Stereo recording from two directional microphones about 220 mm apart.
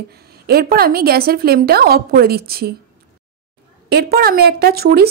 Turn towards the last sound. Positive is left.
turn(degrees=-45)  # may be behind; listen again after turning